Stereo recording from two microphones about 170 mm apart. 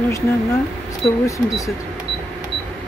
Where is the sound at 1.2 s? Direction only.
20° left (ahead or behind).